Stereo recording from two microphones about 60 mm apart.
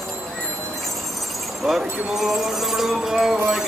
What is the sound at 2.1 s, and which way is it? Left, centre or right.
Music, centre.